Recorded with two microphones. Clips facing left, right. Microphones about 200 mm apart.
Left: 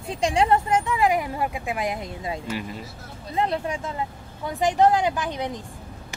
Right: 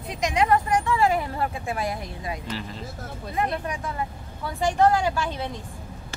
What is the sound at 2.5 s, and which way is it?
Speech, 10° left (ahead or behind).